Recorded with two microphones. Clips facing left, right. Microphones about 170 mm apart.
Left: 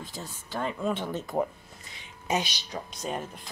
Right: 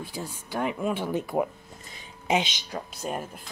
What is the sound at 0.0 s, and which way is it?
A woman's voice, 10° right (ahead or behind).